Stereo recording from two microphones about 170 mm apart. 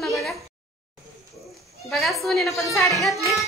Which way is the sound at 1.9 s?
Centre (ahead or behind).